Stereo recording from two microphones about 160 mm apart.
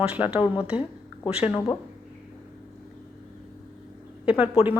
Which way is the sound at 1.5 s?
20° left (ahead or behind).